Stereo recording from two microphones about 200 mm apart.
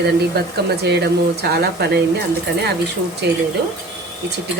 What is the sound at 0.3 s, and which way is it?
Speech, 55° right (ahead or behind).